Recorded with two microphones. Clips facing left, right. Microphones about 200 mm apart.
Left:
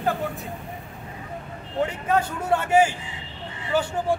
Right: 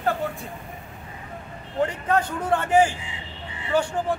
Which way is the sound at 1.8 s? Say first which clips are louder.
Even; 5° left (ahead or behind).